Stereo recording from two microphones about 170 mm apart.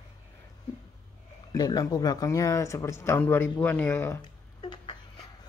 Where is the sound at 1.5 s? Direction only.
25° left (ahead or behind).